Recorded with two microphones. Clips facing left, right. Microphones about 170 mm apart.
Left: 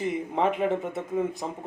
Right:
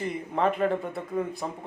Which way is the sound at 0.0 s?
15° left (ahead or behind).